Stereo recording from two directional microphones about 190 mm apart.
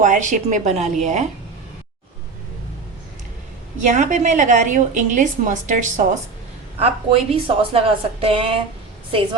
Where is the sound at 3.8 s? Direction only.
40° right (ahead or behind).